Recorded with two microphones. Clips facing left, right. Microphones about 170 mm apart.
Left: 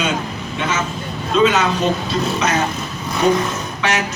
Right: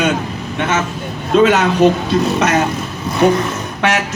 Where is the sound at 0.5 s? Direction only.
60° right (ahead or behind).